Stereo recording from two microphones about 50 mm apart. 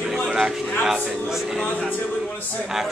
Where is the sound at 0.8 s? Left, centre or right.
Centre.